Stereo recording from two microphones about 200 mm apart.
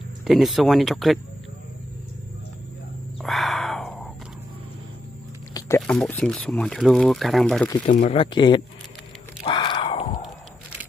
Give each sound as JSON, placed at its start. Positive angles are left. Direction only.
{"t": 0.3, "sound": "speech", "side_deg": 0}
{"t": 3.2, "sound": "a sound", "side_deg": 0}
{"t": 5.8, "sound": "speech", "side_deg": 5}
{"t": 7.9, "sound": "speech", "side_deg": 30}
{"t": 9.5, "sound": "grunt", "side_deg": 25}
{"t": 10.2, "sound": "a sound", "side_deg": -5}